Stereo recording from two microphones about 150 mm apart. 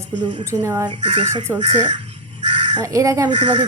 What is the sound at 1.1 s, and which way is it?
Speech, 50° right (ahead or behind).